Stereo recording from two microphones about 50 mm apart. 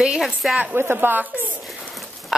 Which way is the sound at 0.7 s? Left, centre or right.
Right.